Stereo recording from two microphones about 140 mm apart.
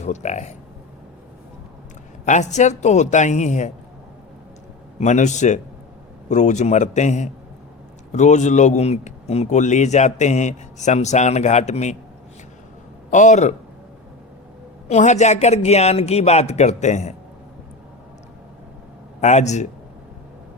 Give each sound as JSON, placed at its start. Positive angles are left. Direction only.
{"t": 0.0, "sound": "speech", "side_deg": 55}
{"t": 2.2, "sound": "speech", "side_deg": 60}
{"t": 4.9, "sound": "speech", "side_deg": 60}
{"t": 13.1, "sound": "speech", "side_deg": 60}
{"t": 14.8, "sound": "a man's voice", "side_deg": 55}
{"t": 19.2, "sound": "speech", "side_deg": 55}